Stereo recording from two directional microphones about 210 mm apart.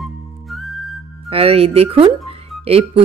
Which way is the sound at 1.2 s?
25° right (ahead or behind).